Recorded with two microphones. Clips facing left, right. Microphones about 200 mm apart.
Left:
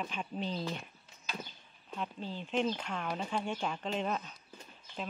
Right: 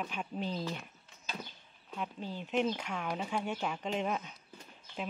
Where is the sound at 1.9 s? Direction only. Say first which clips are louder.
Even; 10° right (ahead or behind).